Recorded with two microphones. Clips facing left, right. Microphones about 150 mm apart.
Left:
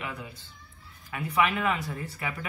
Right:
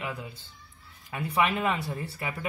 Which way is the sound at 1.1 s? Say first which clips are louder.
Even; 25° right (ahead or behind).